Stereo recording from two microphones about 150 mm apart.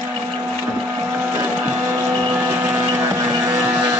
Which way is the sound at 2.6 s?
15° right (ahead or behind).